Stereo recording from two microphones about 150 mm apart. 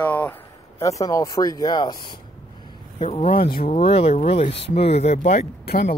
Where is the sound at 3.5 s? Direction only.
80° left.